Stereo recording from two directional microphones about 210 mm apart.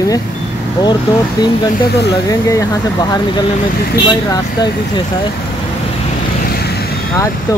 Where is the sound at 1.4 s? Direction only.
20° left (ahead or behind).